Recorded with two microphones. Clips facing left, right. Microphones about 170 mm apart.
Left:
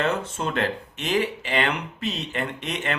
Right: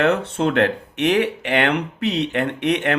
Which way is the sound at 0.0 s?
65° right (ahead or behind).